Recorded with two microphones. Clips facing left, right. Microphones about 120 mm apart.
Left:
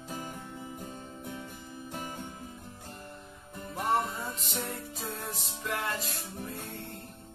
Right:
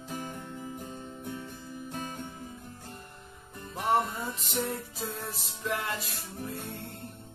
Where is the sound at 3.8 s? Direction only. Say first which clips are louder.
Right 2 dB; centre (ahead or behind).